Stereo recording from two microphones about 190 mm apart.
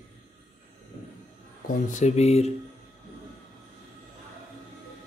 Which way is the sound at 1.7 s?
40° left (ahead or behind).